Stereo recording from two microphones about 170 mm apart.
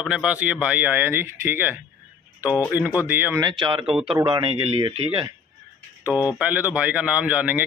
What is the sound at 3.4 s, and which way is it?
Speech, 30° right (ahead or behind).